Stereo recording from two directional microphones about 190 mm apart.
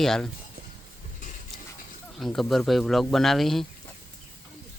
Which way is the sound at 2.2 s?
Centre (ahead or behind).